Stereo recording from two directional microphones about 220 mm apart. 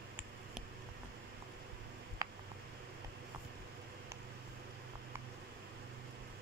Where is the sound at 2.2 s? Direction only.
15° right (ahead or behind).